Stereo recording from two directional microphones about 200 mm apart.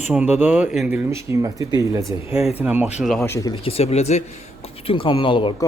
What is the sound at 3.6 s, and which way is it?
Speech, 30° left (ahead or behind).